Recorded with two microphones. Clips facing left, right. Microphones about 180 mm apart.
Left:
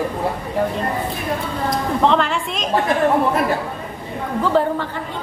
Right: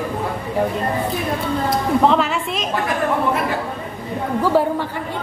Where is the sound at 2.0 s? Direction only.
5° right (ahead or behind).